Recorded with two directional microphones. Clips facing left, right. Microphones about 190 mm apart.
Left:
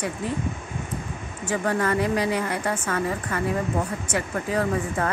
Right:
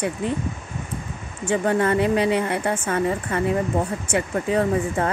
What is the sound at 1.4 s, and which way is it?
A woman's voice, 25° right (ahead or behind).